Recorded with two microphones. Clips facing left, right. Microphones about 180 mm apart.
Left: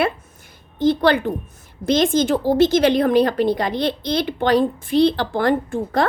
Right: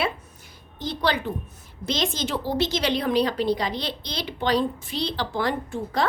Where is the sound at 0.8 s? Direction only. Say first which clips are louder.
Left 10 dB; 55° left (ahead or behind).